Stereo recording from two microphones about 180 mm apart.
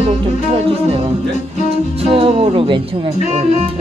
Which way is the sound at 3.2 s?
35° right (ahead or behind).